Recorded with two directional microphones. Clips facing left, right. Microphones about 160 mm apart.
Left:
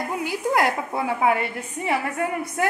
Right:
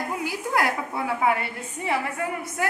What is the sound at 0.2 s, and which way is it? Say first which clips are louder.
Speech: left 4 dB; 20° left (ahead or behind).